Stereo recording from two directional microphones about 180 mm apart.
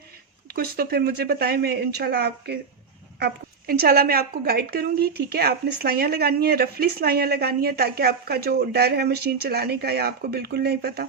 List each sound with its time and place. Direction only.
0.5 s a woman's voice: 60° right (ahead or behind)